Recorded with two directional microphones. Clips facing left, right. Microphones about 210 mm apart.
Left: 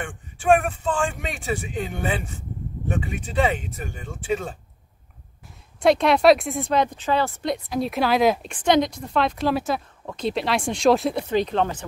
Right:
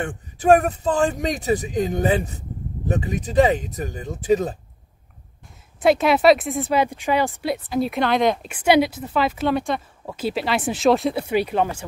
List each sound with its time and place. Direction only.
0.0 s speech: 40° right (ahead or behind)
5.8 s speech: 5° right (ahead or behind)
8.5 s speech: 10° right (ahead or behind)